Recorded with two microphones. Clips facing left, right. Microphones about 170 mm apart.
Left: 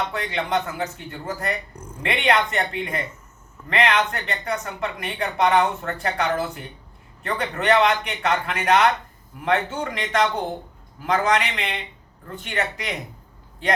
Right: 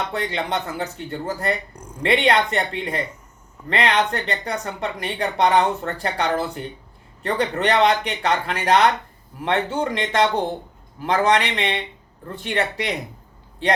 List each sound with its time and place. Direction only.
0.1 s speech: 35° right (ahead or behind)
1.7 s speech: 10° right (ahead or behind)
2.0 s speech: 35° right (ahead or behind)
11.0 s speech: 30° right (ahead or behind)